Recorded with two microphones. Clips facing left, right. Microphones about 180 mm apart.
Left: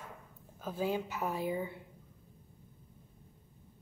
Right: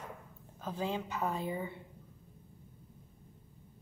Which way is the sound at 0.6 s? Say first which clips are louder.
Left 2 dB; 5° left (ahead or behind).